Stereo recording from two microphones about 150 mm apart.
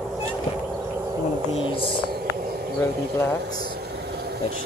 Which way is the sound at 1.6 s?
35° left (ahead or behind).